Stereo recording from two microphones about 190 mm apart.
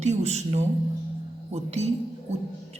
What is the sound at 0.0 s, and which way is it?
A man's voice, 35° right (ahead or behind).